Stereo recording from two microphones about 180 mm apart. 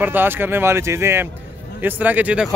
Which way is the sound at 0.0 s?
10° right (ahead or behind).